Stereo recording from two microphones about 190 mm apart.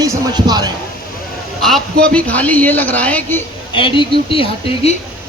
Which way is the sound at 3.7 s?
25° left (ahead or behind).